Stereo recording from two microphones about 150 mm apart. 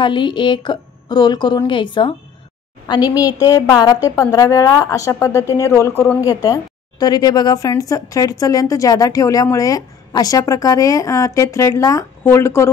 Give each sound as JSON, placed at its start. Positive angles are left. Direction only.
{"t": 0.0, "sound": "a woman's voice", "side_deg": 30}